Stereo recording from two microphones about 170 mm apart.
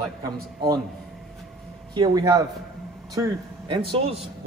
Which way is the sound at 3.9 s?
35° right (ahead or behind).